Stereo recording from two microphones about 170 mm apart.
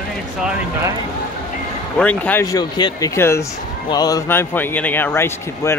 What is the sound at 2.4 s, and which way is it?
A man's voice, 25° left (ahead or behind).